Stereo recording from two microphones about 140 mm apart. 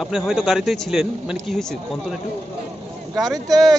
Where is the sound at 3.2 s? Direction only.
25° right (ahead or behind).